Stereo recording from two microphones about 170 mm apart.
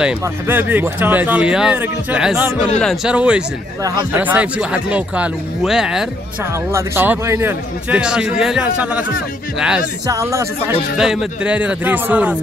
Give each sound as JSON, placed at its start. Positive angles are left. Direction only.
{"t": 0.0, "sound": "speech", "side_deg": -10}
{"t": 6.7, "sound": "speech", "side_deg": -15}
{"t": 10.0, "sound": "speech", "side_deg": -20}
{"t": 11.0, "sound": "speech", "side_deg": -5}